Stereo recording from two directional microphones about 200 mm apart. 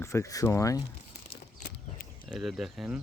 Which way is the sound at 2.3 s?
Centre (ahead or behind).